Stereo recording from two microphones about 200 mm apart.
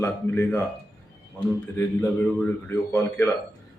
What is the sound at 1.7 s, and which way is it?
A man's voice, 10° left (ahead or behind).